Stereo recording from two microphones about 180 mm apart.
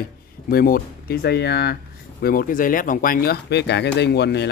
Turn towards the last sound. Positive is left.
turn(degrees=70)  # may be behind; listen again after turning